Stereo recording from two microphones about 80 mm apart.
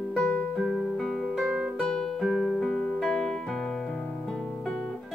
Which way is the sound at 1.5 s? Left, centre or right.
Centre.